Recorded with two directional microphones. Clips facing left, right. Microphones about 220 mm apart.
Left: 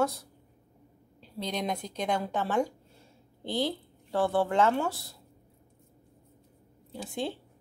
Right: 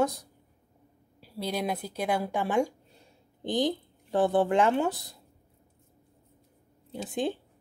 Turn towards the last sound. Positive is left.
turn(degrees=-20)  # may be behind; listen again after turning